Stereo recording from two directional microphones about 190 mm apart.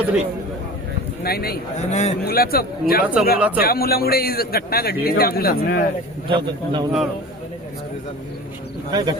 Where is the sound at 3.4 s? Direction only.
10° right (ahead or behind).